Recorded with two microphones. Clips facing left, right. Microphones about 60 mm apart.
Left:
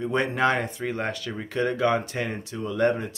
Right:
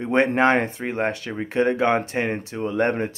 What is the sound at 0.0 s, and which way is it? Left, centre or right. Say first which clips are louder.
Speech: right 5 dB; right.